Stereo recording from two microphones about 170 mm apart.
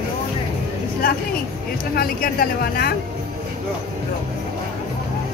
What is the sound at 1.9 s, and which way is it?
Speech, 60° left (ahead or behind).